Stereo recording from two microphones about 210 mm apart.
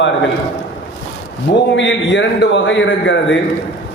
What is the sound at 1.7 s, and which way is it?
A man's voice, 60° left (ahead or behind).